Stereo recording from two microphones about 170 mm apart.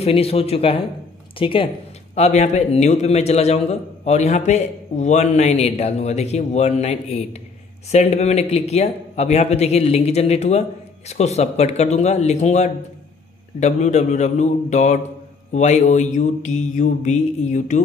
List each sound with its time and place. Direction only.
0.0 s a man's voice: 35° left (ahead or behind)
2.1 s a man's voice: 40° left (ahead or behind)
13.6 s mantra: 45° left (ahead or behind)